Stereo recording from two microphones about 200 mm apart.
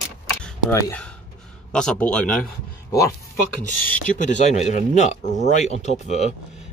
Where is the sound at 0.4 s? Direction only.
10° left (ahead or behind).